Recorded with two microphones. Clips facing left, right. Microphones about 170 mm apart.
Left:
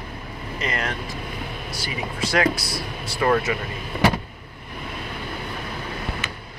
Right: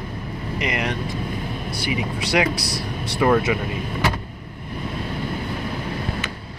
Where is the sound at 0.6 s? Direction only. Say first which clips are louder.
Right 2 dB; 15° right (ahead or behind).